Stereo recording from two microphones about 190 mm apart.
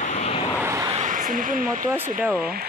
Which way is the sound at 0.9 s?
40° right (ahead or behind).